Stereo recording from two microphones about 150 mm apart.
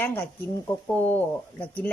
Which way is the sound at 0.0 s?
15° left (ahead or behind).